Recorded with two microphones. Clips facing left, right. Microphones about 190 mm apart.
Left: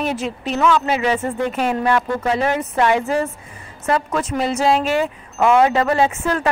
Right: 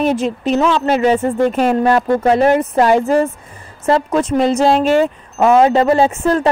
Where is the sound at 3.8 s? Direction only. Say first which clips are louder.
Right 6 dB; 30° right (ahead or behind).